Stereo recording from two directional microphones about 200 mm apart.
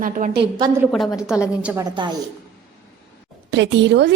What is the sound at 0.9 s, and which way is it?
Speech, centre (ahead or behind).